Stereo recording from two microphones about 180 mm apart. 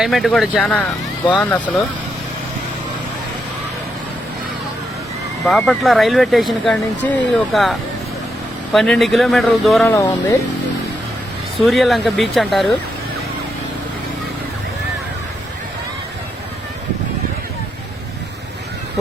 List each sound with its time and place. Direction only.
0.0 s speech: centre (ahead or behind)
5.5 s speech: centre (ahead or behind)
9.8 s speech: 15° left (ahead or behind)
11.5 s speech: centre (ahead or behind)